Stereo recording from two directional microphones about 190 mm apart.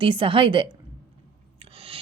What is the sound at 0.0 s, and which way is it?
Speech, 25° right (ahead or behind).